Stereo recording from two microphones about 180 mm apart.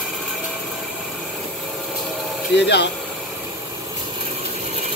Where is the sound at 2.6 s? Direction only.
70° left (ahead or behind).